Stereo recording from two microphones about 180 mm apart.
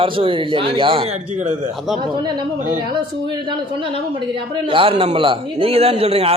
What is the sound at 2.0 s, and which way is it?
Speech, 25° right (ahead or behind).